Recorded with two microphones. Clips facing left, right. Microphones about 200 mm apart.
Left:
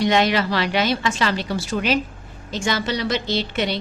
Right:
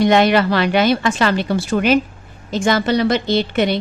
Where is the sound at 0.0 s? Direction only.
55° right (ahead or behind).